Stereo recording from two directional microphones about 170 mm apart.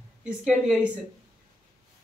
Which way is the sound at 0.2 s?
5° right (ahead or behind).